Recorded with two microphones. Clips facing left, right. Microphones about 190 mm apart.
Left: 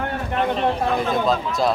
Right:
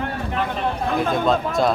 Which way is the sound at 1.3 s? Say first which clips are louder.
Right 1 dB; centre (ahead or behind).